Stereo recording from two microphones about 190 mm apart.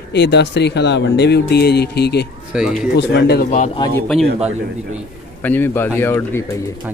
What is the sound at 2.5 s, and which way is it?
Speech, 5° right (ahead or behind).